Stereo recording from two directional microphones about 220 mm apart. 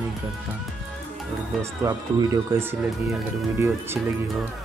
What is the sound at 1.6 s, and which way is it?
Speech, 15° right (ahead or behind).